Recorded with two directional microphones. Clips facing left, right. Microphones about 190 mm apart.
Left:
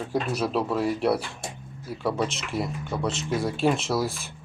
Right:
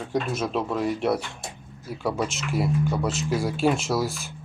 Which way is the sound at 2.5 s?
Centre (ahead or behind).